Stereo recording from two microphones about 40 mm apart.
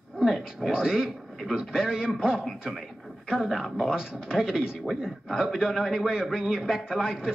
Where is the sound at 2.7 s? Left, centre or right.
Centre.